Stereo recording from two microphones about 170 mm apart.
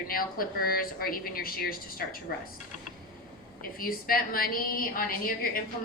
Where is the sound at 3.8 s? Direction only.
60° left (ahead or behind).